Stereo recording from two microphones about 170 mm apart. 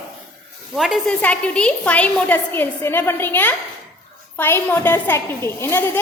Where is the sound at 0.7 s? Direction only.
Centre (ahead or behind).